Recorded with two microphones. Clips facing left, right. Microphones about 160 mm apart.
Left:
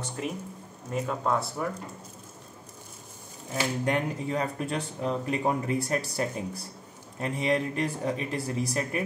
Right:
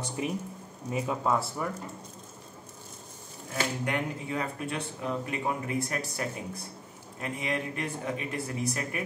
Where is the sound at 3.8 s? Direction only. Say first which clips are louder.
Left 4 dB; 35° left (ahead or behind).